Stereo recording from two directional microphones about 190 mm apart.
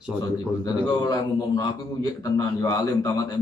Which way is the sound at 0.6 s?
20° left (ahead or behind).